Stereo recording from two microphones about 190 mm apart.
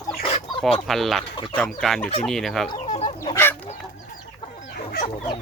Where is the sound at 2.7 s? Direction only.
35° left (ahead or behind).